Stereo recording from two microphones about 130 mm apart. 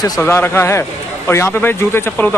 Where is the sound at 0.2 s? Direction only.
15° left (ahead or behind).